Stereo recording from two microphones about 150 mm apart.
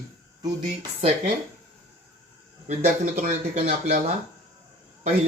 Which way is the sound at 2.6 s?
60° right (ahead or behind).